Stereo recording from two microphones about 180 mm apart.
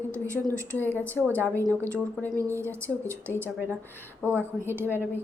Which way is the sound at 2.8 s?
15° right (ahead or behind).